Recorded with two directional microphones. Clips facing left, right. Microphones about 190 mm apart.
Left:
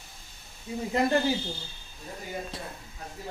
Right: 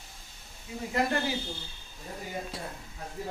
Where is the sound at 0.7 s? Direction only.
30° left (ahead or behind).